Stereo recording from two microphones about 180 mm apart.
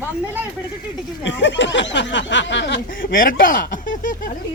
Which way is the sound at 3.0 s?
50° left (ahead or behind).